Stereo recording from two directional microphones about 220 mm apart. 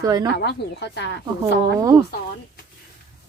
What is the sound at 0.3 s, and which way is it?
Speech, 50° left (ahead or behind).